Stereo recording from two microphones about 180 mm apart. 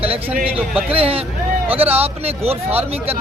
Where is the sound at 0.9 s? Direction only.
30° right (ahead or behind).